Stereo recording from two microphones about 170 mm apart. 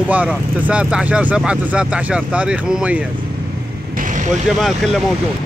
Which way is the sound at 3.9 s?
50° right (ahead or behind).